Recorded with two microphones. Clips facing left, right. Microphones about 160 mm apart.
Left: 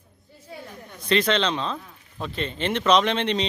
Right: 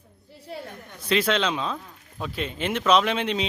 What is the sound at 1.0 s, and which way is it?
Speech, 5° right (ahead or behind).